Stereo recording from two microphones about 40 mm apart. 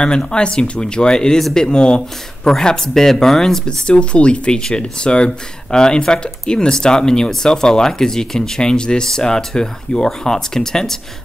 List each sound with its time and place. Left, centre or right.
0.0 s speech: left
3.6 s speech: left